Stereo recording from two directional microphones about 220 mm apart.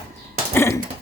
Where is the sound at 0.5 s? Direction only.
10° left (ahead or behind).